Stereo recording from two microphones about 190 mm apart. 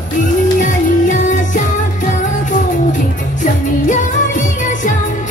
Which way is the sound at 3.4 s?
40° left (ahead or behind).